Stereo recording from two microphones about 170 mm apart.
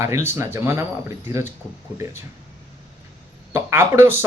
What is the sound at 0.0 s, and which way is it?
Speech, 15° right (ahead or behind).